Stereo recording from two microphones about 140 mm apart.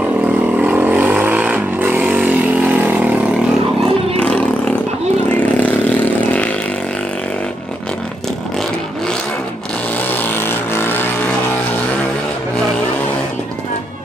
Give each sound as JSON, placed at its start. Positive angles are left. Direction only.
{"t": 0.6, "sound": "vehicle", "side_deg": -10}
{"t": 4.2, "sound": "a sound", "side_deg": 10}
{"t": 5.4, "sound": "vehicle", "side_deg": 10}
{"t": 10.7, "sound": "vehicle", "side_deg": 15}